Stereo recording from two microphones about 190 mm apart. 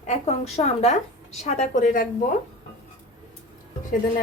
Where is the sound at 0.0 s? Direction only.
35° left (ahead or behind).